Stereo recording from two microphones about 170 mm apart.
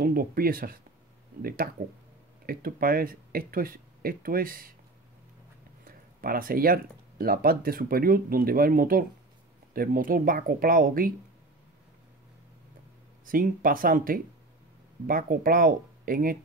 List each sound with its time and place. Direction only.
0.0 s speech: 60° right (ahead or behind)
1.8 s speech: 65° right (ahead or behind)
5.9 s speech: 55° right (ahead or behind)
13.2 s speech: 55° right (ahead or behind)